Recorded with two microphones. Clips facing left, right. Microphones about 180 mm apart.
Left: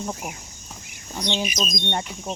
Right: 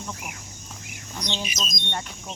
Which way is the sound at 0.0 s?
35° left (ahead or behind).